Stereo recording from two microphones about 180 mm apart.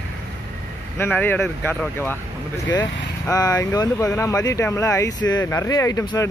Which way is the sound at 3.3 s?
20° left (ahead or behind).